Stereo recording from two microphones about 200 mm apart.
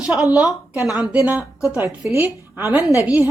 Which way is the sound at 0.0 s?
5° right (ahead or behind).